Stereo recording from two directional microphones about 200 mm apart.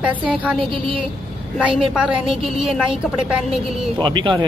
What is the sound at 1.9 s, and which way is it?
A woman's voice, 5° right (ahead or behind).